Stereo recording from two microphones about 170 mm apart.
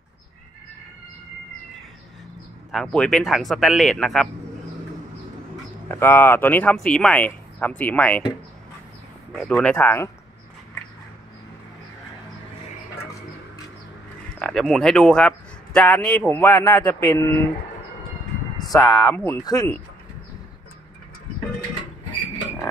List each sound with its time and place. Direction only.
2.7 s speech: 5° left (ahead or behind)
5.9 s speech: 15° left (ahead or behind)
9.3 s speech: 5° left (ahead or behind)
14.4 s speech: centre (ahead or behind)
18.7 s speech: 15° left (ahead or behind)